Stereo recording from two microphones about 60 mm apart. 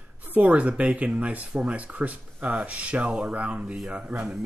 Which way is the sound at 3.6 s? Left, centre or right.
Centre.